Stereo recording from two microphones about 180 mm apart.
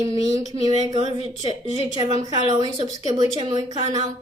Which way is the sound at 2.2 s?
20° right (ahead or behind).